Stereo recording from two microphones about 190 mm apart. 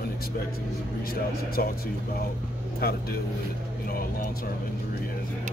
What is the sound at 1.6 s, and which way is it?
Speech, 50° left (ahead or behind).